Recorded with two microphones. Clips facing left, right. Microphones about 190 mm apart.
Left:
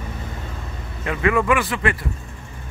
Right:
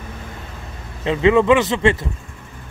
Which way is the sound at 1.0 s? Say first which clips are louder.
Right 6 dB; 25° right (ahead or behind).